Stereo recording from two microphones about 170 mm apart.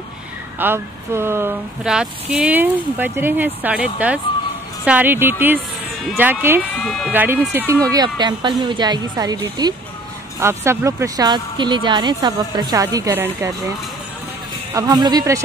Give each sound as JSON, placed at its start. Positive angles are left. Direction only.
{"t": 0.6, "sound": "speech", "side_deg": -15}
{"t": 6.6, "sound": "speech", "side_deg": 5}
{"t": 7.1, "sound": "speech", "side_deg": -10}
{"t": 14.7, "sound": "speech", "side_deg": -20}